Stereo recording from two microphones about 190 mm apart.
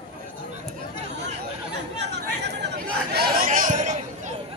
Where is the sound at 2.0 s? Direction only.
60° right (ahead or behind).